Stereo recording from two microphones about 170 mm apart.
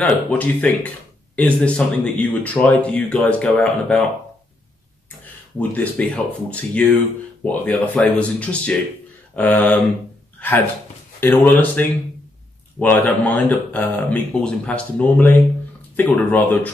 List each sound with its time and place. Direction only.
0.0 s speech: 10° left (ahead or behind)
5.6 s speech: 10° left (ahead or behind)
11.1 s speech: 10° left (ahead or behind)